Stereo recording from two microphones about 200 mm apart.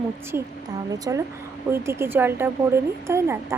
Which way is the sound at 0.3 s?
10° right (ahead or behind).